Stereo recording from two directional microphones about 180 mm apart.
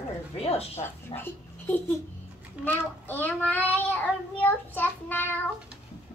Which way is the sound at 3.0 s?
10° left (ahead or behind).